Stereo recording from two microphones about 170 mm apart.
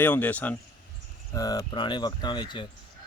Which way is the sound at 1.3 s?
20° left (ahead or behind).